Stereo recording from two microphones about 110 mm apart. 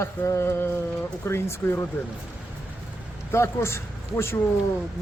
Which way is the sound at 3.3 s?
25° left (ahead or behind).